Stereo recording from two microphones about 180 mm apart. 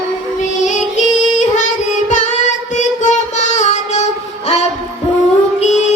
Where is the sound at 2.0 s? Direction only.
45° left (ahead or behind).